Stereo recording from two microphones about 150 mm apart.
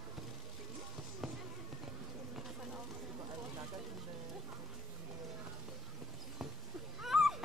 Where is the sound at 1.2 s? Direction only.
Centre (ahead or behind).